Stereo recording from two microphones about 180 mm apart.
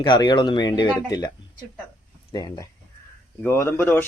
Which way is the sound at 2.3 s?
20° left (ahead or behind).